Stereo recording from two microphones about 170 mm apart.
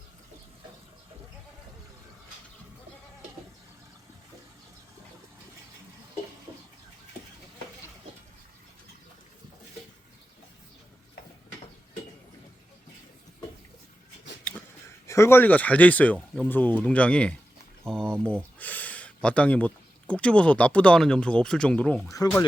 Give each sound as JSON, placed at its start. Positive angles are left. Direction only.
{"t": 15.0, "sound": "speech", "side_deg": 15}
{"t": 17.8, "sound": "boiling", "side_deg": 5}
{"t": 18.6, "sound": "speech", "side_deg": 10}
{"t": 22.1, "sound": "speech", "side_deg": 20}